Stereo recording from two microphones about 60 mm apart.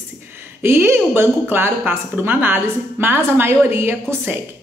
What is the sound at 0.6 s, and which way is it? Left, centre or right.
Speech, right.